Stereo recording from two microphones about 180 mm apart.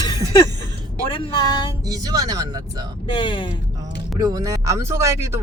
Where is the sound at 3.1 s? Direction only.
25° left (ahead or behind).